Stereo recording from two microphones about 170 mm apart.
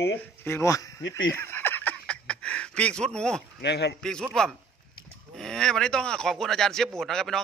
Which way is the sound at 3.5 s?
80° left.